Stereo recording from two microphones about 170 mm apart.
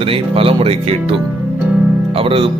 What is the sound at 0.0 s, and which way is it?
Speech, 35° right (ahead or behind).